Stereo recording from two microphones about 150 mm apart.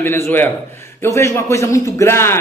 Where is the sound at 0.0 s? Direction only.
15° left (ahead or behind).